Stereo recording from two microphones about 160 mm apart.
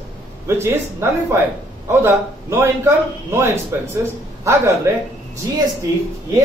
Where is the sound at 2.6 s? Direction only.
15° right (ahead or behind).